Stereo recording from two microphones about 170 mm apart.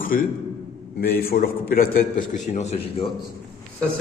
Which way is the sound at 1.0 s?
65° left (ahead or behind).